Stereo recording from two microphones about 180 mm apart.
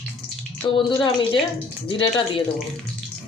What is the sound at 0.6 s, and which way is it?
Speech, 25° left (ahead or behind).